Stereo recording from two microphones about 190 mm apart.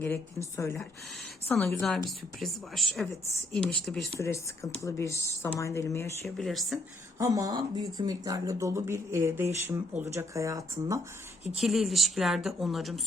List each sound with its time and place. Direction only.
0.0 s a woman's voice: 10° left (ahead or behind)
6.2 s a woman's voice: centre (ahead or behind)
7.2 s speech: 20° right (ahead or behind)
11.5 s a woman's voice: centre (ahead or behind)